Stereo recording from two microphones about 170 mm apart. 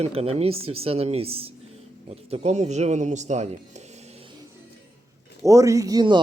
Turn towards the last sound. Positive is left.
turn(degrees=-25)  # may be behind; listen again after turning